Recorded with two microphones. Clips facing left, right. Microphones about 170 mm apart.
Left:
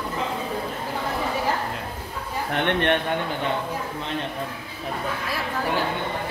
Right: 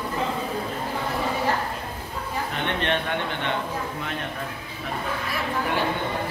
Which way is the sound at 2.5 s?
60° left (ahead or behind).